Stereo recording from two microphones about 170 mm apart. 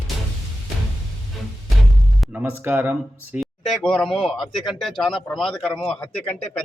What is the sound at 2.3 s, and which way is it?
Speech, 10° right (ahead or behind).